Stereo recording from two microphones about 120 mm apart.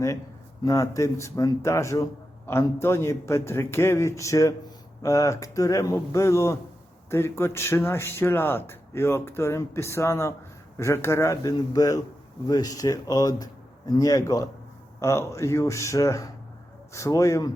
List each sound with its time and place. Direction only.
0.6 s speech: 25° left (ahead or behind)